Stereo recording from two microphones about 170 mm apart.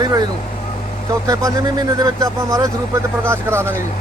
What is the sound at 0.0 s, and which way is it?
Speech, 20° right (ahead or behind).